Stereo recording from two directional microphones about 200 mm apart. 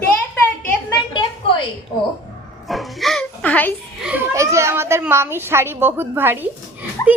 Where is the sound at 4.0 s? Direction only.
10° right (ahead or behind).